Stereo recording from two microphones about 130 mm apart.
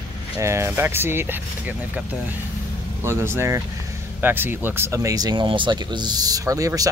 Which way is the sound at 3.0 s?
20° right (ahead or behind).